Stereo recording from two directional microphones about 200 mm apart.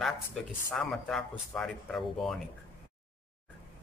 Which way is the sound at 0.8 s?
5° left (ahead or behind).